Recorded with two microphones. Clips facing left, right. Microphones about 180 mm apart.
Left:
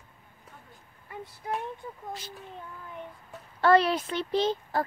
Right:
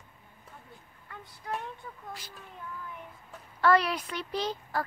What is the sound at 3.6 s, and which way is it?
Speech, 25° left (ahead or behind).